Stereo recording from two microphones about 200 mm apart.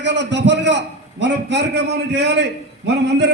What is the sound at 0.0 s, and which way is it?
A man's voice, 60° right (ahead or behind).